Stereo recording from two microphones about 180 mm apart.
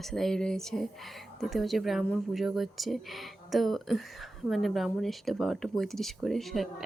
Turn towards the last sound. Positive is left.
turn(degrees=0)  # may be behind; listen again after turning